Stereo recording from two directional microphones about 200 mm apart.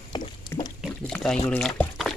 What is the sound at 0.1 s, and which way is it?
Boat, 20° left (ahead or behind).